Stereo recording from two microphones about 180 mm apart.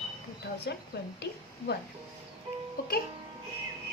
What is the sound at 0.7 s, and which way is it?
A woman's voice, 65° left (ahead or behind).